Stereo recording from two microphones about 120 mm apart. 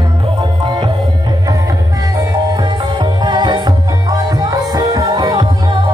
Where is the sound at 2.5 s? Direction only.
35° right (ahead or behind).